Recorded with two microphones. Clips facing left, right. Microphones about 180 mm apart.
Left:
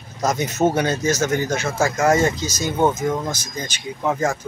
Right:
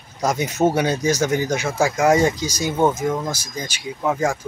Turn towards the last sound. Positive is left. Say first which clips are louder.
# even
turn(degrees=-10)  # may be behind; listen again after turning